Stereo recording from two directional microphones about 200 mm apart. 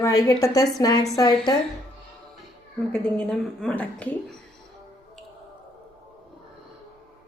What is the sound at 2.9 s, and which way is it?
A woman's voice, 5° left (ahead or behind).